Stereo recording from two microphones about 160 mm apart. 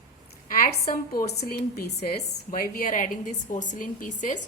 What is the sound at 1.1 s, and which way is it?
Speech, 70° left (ahead or behind).